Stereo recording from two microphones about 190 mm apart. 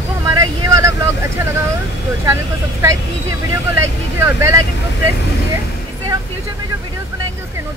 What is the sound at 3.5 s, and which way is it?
Speech, 15° right (ahead or behind).